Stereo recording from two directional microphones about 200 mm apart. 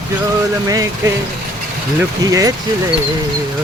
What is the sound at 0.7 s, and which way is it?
Speech, 15° right (ahead or behind).